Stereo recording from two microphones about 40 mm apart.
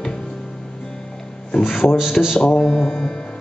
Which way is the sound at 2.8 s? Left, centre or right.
Centre.